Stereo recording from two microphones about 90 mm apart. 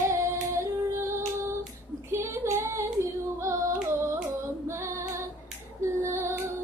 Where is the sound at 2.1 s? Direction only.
30° right (ahead or behind).